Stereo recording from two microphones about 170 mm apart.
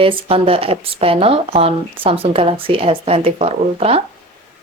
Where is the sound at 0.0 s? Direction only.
30° right (ahead or behind).